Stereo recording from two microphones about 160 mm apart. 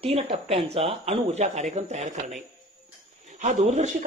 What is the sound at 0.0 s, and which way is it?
Speech, 35° right (ahead or behind).